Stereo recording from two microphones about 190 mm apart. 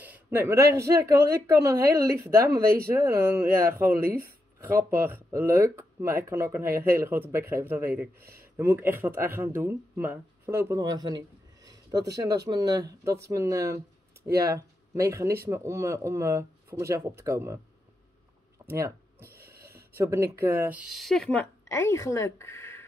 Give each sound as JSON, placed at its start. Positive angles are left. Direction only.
{"t": 0.0, "sound": "speech", "side_deg": -10}
{"t": 2.5, "sound": "speech", "side_deg": -55}
{"t": 2.9, "sound": "speech", "side_deg": -15}
{"t": 4.1, "sound": "a sound", "side_deg": -15}
{"t": 5.0, "sound": "speech", "side_deg": -10}
{"t": 11.6, "sound": "a sound", "side_deg": -20}
{"t": 12.4, "sound": "speech", "side_deg": -20}
{"t": 18.7, "sound": "speech", "side_deg": -15}